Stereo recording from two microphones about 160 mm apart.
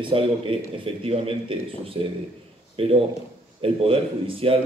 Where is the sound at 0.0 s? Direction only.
35° right (ahead or behind).